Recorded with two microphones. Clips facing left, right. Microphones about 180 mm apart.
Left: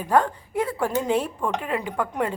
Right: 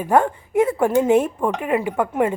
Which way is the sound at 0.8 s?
50° right (ahead or behind).